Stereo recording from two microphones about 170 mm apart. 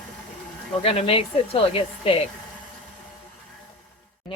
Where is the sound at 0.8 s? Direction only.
35° left (ahead or behind).